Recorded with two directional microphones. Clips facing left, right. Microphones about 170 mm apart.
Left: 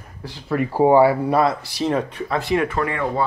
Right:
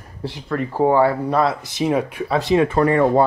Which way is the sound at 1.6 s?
20° right (ahead or behind).